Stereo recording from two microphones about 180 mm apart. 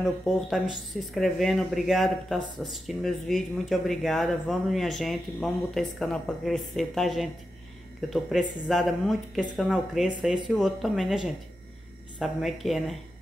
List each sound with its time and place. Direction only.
0.0 s speech: centre (ahead or behind)